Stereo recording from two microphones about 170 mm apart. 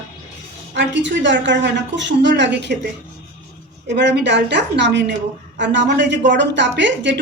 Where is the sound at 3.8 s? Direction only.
90° right.